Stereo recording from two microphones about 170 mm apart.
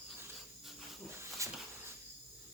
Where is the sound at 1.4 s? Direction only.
20° right (ahead or behind).